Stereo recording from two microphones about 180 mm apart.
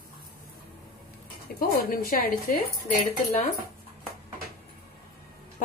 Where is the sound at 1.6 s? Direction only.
55° left (ahead or behind).